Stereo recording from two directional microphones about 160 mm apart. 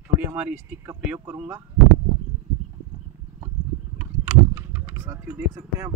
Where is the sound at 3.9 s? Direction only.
10° right (ahead or behind).